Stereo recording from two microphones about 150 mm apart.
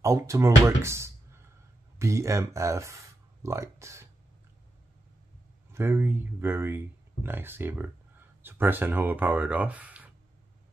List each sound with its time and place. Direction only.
0.0 s speech: 20° right (ahead or behind)
5.7 s speech: 15° right (ahead or behind)